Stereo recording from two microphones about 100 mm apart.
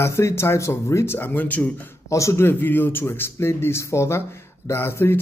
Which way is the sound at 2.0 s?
30° left (ahead or behind).